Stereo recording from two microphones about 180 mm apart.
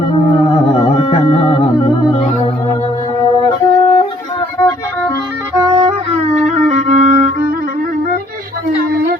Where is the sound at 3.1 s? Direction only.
20° left (ahead or behind).